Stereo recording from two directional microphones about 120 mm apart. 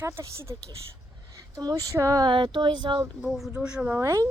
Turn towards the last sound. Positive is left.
turn(degrees=-25)  # may be behind; listen again after turning